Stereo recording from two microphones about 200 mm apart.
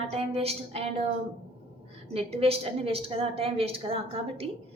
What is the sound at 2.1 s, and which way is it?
A woman's voice, 30° right (ahead or behind).